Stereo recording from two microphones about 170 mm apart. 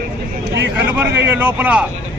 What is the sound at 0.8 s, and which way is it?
Speech, 10° right (ahead or behind).